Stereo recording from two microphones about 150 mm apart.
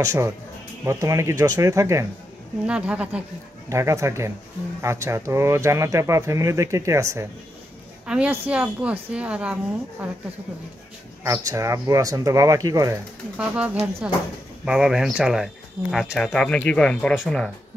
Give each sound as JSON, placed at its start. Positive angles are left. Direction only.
{"t": 0.0, "sound": "speech", "side_deg": -20}
{"t": 2.6, "sound": "a woman's voice", "side_deg": -5}
{"t": 3.6, "sound": "speech", "side_deg": -20}
{"t": 8.1, "sound": "a woman's voice", "side_deg": -10}
{"t": 11.2, "sound": "speech", "side_deg": -20}
{"t": 13.4, "sound": "a woman's voice", "side_deg": -5}